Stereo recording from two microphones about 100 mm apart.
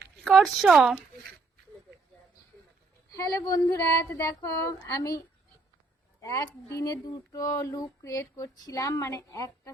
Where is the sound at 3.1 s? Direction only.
35° left (ahead or behind).